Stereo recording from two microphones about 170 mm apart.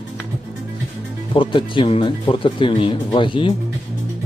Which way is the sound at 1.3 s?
30° left (ahead or behind).